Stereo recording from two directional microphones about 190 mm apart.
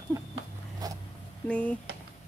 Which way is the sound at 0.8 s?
20° right (ahead or behind).